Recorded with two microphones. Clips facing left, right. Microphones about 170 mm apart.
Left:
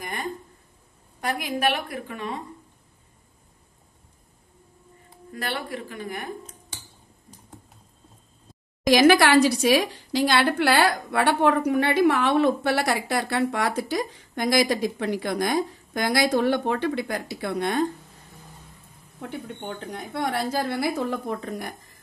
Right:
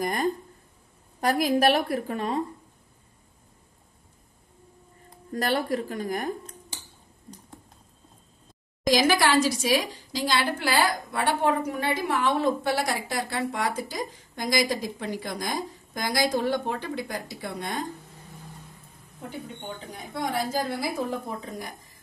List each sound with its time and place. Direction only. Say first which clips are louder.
0.0 s a sound: right 6 dB; 40° right (ahead or behind)
1.2 s a woman's voice: right 4 dB; 40° right (ahead or behind)
5.3 s a woman's voice: right 5 dB; 40° right (ahead or behind)
8.8 s a woman's voice: left 5 dB; 65° left (ahead or behind)
19.9 s a woman's voice: left 2 dB; 65° left (ahead or behind)